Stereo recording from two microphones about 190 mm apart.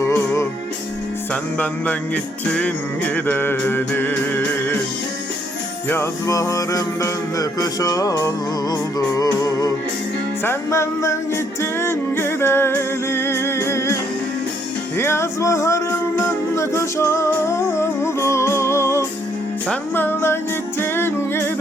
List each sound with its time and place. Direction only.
0.0 s music: 15° left (ahead or behind)
5.9 s music: 15° left (ahead or behind)
14.9 s music: 15° left (ahead or behind)